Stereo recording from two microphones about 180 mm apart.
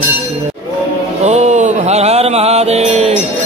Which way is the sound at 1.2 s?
40° right (ahead or behind).